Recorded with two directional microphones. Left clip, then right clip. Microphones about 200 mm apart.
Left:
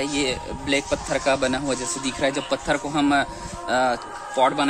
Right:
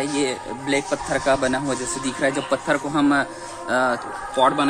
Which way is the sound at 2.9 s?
35° left (ahead or behind).